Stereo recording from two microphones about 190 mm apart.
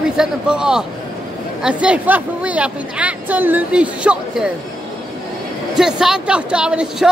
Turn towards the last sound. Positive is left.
turn(degrees=-5)  # may be behind; listen again after turning